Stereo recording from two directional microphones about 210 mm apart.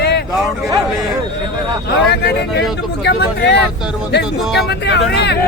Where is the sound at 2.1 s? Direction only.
50° left (ahead or behind).